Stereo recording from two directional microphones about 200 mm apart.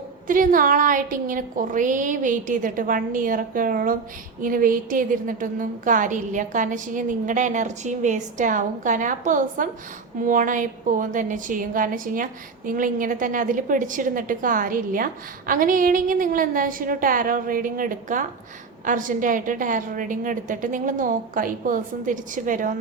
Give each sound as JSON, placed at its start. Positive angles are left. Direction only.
{"t": 0.3, "sound": "a woman's voice", "side_deg": -45}